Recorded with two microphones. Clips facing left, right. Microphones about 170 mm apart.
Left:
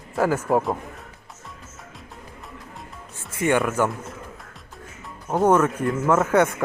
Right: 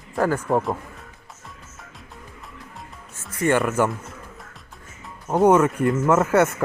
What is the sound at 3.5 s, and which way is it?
Music, centre (ahead or behind).